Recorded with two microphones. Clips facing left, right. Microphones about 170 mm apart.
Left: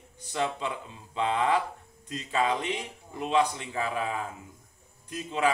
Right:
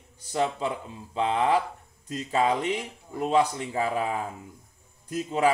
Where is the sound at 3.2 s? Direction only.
40° right (ahead or behind).